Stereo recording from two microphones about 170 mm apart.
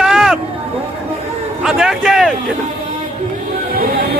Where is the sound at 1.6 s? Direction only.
5° right (ahead or behind).